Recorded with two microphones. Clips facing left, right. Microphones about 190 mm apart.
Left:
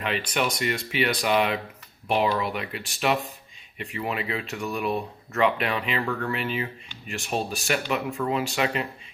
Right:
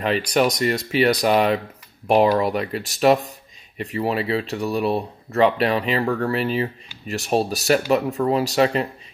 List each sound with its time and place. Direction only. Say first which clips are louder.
0.0 s speech: right 7 dB; 35° right (ahead or behind)